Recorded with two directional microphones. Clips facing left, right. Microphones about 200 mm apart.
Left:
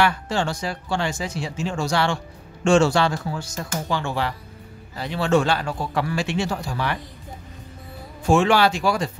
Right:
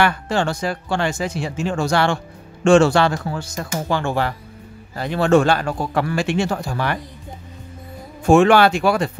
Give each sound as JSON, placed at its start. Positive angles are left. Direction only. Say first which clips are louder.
{"t": 0.0, "sound": "speech", "louder": "right 3 dB", "side_deg": -55}
{"t": 8.3, "sound": "speech", "louder": "right 5 dB", "side_deg": -55}